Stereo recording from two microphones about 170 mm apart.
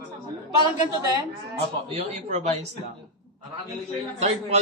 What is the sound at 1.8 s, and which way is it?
Speech, 40° right (ahead or behind).